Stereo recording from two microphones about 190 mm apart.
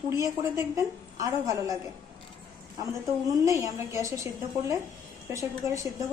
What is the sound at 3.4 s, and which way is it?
Speech, 15° right (ahead or behind).